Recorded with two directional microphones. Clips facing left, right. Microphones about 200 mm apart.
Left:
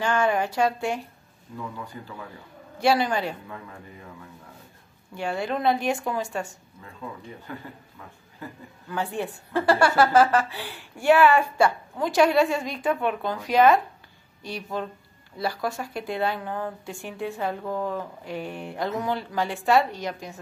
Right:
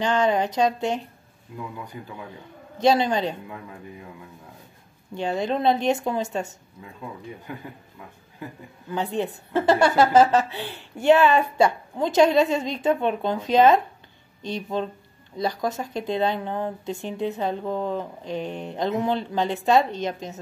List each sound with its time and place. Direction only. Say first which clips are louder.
0.0 s speech: right 2 dB; 20° right (ahead or behind)
5.1 s speech: right 3 dB; 20° right (ahead or behind)
8.8 s speech: right 3 dB; 20° right (ahead or behind)